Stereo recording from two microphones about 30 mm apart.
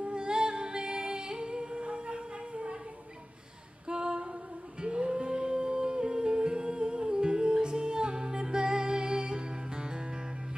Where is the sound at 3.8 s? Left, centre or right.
Right.